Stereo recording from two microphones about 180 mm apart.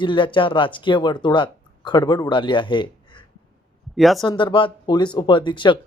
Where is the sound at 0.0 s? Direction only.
25° left (ahead or behind).